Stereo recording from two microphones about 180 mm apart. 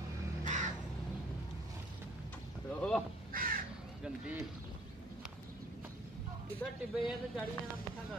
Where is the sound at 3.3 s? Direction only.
50° right (ahead or behind).